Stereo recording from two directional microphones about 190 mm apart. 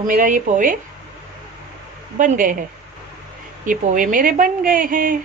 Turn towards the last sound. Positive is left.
turn(degrees=-45)  # may be behind; listen again after turning